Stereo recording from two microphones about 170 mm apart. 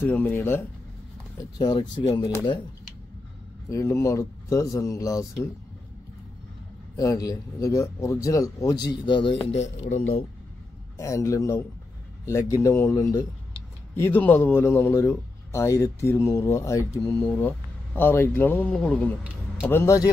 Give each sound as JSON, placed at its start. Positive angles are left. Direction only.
{"t": 0.0, "sound": "speech", "side_deg": 10}
{"t": 1.4, "sound": "speech", "side_deg": 25}
{"t": 3.7, "sound": "speech", "side_deg": 15}
{"t": 7.2, "sound": "speech", "side_deg": 20}
{"t": 9.4, "sound": "speech", "side_deg": 40}
{"t": 11.0, "sound": "speech", "side_deg": 20}
{"t": 19.7, "sound": "speech", "side_deg": 15}